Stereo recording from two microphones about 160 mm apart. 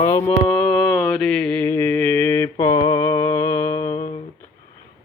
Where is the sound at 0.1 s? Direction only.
20° left (ahead or behind).